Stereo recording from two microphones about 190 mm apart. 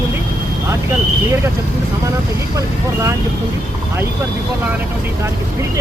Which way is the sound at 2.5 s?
15° right (ahead or behind).